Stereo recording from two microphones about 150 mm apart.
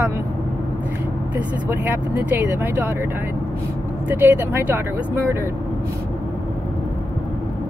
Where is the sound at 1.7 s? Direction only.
15° right (ahead or behind).